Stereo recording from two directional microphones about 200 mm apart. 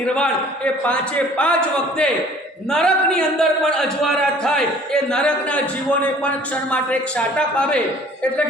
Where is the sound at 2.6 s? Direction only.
5° left (ahead or behind).